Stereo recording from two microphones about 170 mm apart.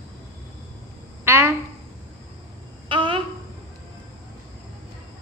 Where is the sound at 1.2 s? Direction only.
15° right (ahead or behind).